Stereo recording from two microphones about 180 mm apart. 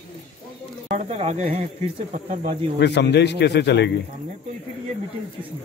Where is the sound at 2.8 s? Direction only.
70° left (ahead or behind).